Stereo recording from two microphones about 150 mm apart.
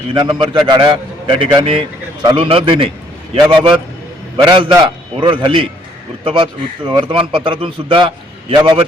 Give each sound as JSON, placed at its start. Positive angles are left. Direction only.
{"t": 0.1, "sound": "a man's voice", "side_deg": -30}